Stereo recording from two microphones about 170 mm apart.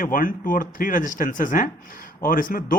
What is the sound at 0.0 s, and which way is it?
Speech, 55° left (ahead or behind).